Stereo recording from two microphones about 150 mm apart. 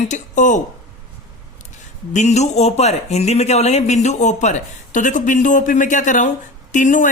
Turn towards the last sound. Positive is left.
turn(degrees=60)  # may be behind; listen again after turning